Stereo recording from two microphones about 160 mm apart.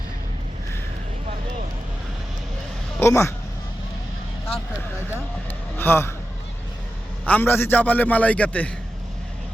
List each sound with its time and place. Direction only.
3.0 s a man's voice: 15° left (ahead or behind)
5.7 s a sound: 15° left (ahead or behind)
7.3 s a man's voice: 10° left (ahead or behind)